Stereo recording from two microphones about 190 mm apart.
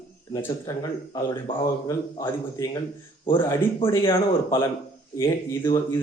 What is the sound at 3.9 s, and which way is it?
Speech, 15° left (ahead or behind).